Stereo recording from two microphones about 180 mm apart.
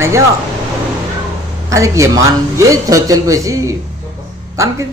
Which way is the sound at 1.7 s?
15° right (ahead or behind).